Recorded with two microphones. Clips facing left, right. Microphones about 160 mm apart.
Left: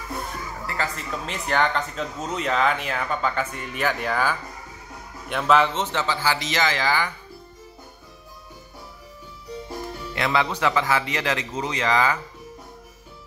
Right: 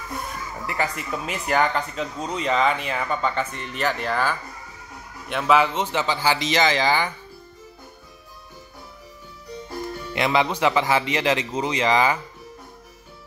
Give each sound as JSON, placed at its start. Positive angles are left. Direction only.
{"t": 0.7, "sound": "speech", "side_deg": -15}
{"t": 5.3, "sound": "speech", "side_deg": -5}
{"t": 10.1, "sound": "a man's voice", "side_deg": -20}